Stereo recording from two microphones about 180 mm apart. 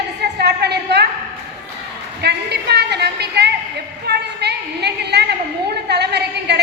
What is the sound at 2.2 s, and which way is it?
A woman's voice, 65° right (ahead or behind).